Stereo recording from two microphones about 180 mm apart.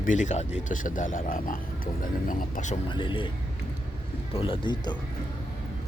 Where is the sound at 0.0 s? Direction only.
45° left (ahead or behind).